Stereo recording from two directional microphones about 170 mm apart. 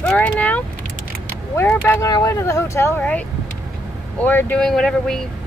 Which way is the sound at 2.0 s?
20° left (ahead or behind).